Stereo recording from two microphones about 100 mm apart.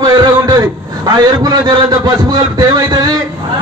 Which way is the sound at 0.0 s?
40° right (ahead or behind).